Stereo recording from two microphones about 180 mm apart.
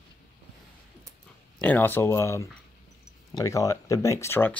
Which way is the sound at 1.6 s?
10° left (ahead or behind).